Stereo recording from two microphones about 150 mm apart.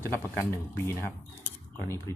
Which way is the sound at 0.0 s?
15° left (ahead or behind).